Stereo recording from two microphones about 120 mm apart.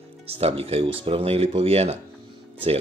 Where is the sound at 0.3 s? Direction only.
55° right (ahead or behind).